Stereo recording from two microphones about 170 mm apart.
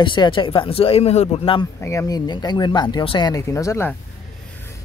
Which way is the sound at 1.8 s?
15° left (ahead or behind).